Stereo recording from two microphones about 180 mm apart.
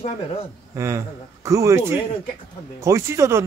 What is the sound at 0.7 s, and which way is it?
Speech, 15° right (ahead or behind).